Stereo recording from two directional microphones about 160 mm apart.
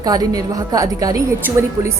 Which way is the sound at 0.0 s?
25° right (ahead or behind).